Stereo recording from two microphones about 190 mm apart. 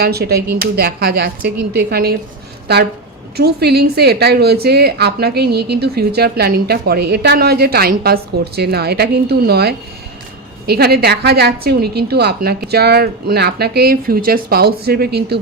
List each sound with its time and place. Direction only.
0.0 s a woman's voice: 55° right (ahead or behind)
3.3 s a woman's voice: 60° right (ahead or behind)